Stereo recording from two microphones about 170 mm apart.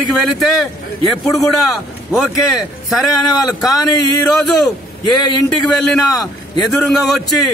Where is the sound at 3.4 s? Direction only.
20° left (ahead or behind).